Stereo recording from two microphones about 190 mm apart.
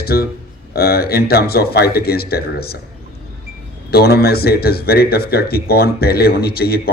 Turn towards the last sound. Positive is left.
turn(degrees=55)  # may be behind; listen again after turning